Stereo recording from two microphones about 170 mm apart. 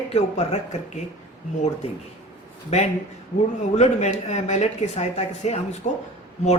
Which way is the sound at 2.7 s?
40° left (ahead or behind).